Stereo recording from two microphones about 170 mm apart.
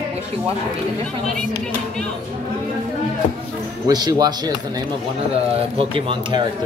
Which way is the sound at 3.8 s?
25° right (ahead or behind).